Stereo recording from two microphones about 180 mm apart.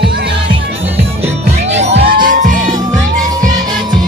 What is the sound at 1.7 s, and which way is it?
Music, 45° right (ahead or behind).